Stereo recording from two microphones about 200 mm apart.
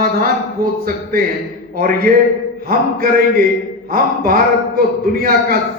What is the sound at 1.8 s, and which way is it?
A man's voice, 50° right (ahead or behind).